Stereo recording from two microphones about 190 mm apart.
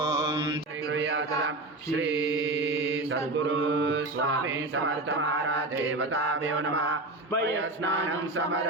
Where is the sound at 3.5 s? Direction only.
80° right.